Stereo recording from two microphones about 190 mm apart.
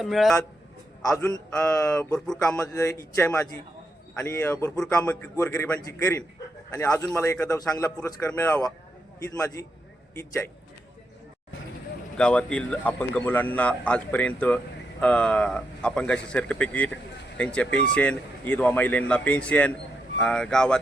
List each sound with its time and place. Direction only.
0.0 s speech: centre (ahead or behind)
2.1 s a man's voice: 5° left (ahead or behind)
12.1 s a man's voice: 5° left (ahead or behind)